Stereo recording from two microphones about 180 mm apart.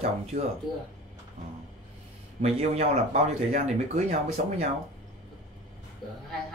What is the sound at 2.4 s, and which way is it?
Speech, 35° right (ahead or behind).